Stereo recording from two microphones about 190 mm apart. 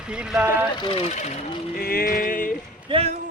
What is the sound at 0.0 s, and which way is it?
Speech, 5° right (ahead or behind).